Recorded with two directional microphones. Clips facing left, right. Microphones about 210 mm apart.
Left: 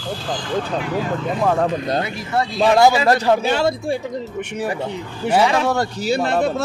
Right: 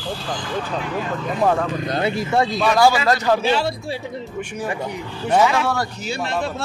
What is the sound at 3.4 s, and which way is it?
Speech, 45° left (ahead or behind).